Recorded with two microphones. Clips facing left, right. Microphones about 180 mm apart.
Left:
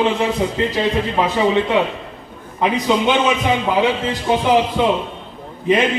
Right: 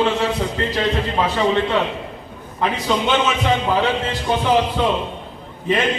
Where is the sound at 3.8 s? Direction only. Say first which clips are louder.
Left 2 dB; 15° left (ahead or behind).